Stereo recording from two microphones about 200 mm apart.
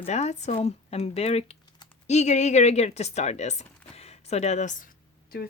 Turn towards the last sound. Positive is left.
turn(degrees=35)  # may be behind; listen again after turning